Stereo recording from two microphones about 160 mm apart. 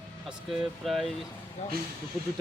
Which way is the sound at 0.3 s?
Centre (ahead or behind).